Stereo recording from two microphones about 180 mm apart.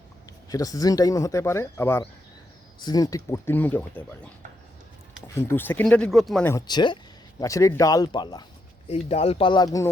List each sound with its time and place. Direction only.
0.5 s speech: 20° left (ahead or behind)
5.3 s speech: 15° left (ahead or behind)
6.4 s speech: 20° left (ahead or behind)
8.9 s speech: 35° left (ahead or behind)